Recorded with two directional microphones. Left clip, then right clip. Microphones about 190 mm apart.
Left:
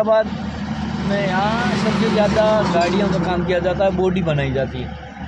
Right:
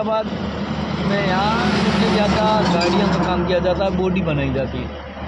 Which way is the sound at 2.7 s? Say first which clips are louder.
Left 1 dB; 65° right (ahead or behind).